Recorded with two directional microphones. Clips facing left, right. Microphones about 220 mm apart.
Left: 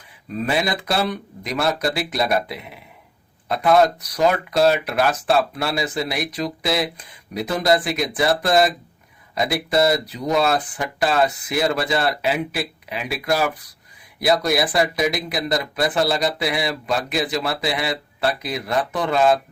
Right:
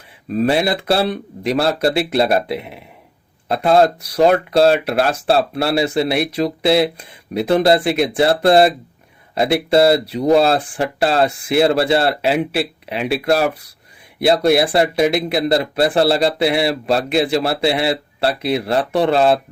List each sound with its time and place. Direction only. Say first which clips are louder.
0.3 s speech: right 6 dB; 30° right (ahead or behind)